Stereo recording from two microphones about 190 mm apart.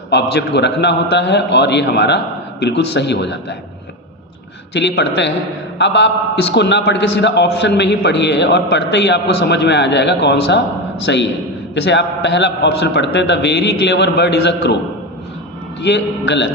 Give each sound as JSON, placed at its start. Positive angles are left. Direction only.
{"t": 0.1, "sound": "a man's voice", "side_deg": 65}
{"t": 4.7, "sound": "a man's voice", "side_deg": 65}
{"t": 15.8, "sound": "a man's voice", "side_deg": 65}